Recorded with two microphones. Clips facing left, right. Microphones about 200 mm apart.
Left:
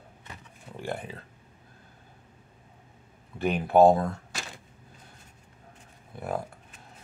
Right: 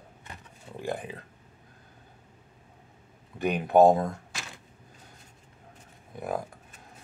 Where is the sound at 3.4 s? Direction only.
15° right (ahead or behind).